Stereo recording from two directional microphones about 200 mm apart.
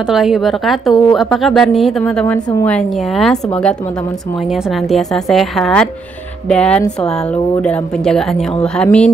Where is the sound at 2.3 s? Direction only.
20° left (ahead or behind).